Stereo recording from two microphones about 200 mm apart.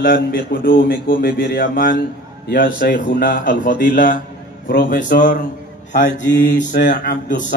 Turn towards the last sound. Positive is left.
turn(degrees=45)  # may be behind; listen again after turning